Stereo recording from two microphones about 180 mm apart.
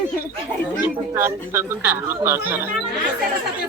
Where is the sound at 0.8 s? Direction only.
15° right (ahead or behind).